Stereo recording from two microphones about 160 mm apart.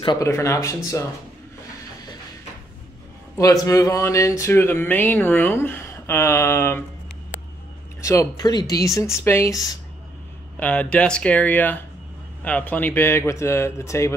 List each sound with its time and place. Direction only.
0.0 s speech: 30° left (ahead or behind)
0.3 s speech: 20° left (ahead or behind)
3.3 s speech: 20° left (ahead or behind)
8.0 s speech: 20° left (ahead or behind)
10.6 s speech: 10° left (ahead or behind)